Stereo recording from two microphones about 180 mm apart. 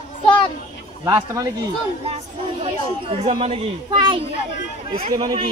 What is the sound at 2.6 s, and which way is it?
Speech, 30° right (ahead or behind).